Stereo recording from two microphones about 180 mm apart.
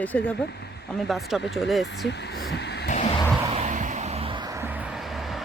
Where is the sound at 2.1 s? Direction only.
70° left (ahead or behind).